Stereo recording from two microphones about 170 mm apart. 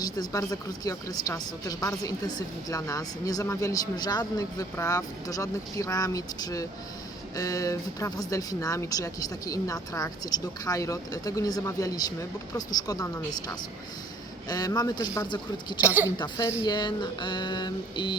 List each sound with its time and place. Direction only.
0.0 s a woman's voice: 25° left (ahead or behind)
14.4 s a woman's voice: 25° left (ahead or behind)
15.8 s a woman's voice: 10° right (ahead or behind)
16.0 s a woman's voice: 20° left (ahead or behind)